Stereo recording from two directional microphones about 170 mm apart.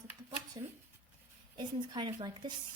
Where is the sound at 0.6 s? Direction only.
20° right (ahead or behind).